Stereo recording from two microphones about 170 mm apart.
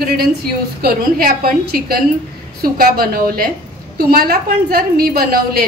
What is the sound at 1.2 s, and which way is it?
A woman's voice, 60° right (ahead or behind).